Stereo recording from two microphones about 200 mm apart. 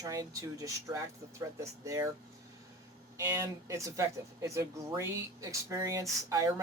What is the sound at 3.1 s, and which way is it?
Speech, 15° right (ahead or behind).